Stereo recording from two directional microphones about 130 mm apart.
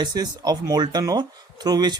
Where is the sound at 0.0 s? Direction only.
30° right (ahead or behind).